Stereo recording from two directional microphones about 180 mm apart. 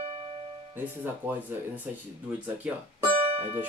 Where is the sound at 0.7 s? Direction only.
10° right (ahead or behind).